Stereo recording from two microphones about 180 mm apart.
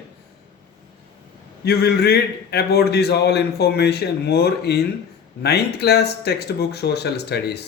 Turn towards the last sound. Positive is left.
turn(degrees=65)  # may be behind; listen again after turning